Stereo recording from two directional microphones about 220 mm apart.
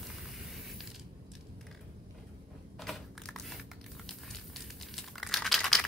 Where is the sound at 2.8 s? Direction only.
Centre (ahead or behind).